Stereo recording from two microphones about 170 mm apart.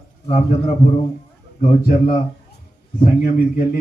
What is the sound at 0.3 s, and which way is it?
Speech, 40° left (ahead or behind).